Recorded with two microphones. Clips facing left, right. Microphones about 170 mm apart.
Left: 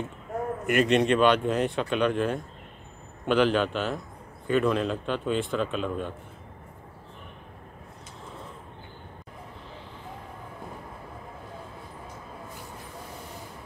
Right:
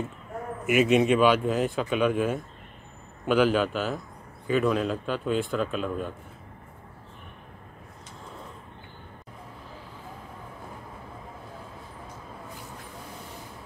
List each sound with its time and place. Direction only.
0.7 s speech: 5° right (ahead or behind)